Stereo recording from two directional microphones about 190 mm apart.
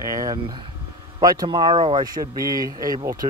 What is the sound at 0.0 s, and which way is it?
Speech, 20° right (ahead or behind).